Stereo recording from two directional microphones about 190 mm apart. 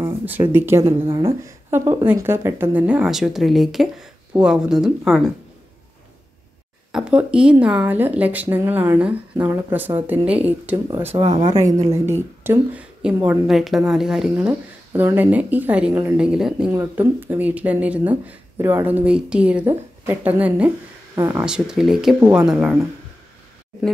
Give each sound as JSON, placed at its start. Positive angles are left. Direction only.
{"t": 0.0, "sound": "speech", "side_deg": -10}
{"t": 1.0, "sound": "speech", "side_deg": -25}
{"t": 1.4, "sound": "a woman's voice", "side_deg": -15}
{"t": 6.9, "sound": "a woman's voice", "side_deg": -5}
{"t": 11.1, "sound": "speech", "side_deg": -35}
{"t": 11.6, "sound": "a woman's voice", "side_deg": -15}
{"t": 21.5, "sound": "a woman's voice", "side_deg": -5}